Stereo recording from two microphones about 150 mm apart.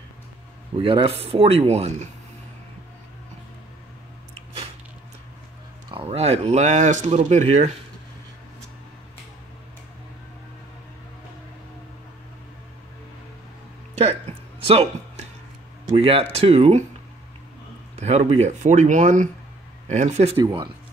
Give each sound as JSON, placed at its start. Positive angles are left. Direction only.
{"t": 0.7, "sound": "speech", "side_deg": -35}
{"t": 5.9, "sound": "speech", "side_deg": -40}
{"t": 14.6, "sound": "a sound", "side_deg": -40}
{"t": 15.8, "sound": "speech", "side_deg": -40}
{"t": 17.9, "sound": "speech", "side_deg": -45}
{"t": 20.3, "sound": "speech", "side_deg": -30}